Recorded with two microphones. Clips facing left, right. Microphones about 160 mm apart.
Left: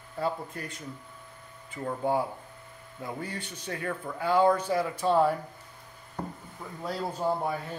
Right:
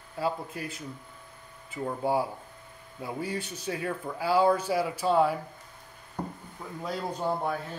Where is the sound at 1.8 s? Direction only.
10° right (ahead or behind).